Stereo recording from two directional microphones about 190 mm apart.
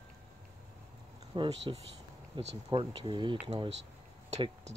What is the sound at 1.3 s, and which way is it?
Speech, 30° right (ahead or behind).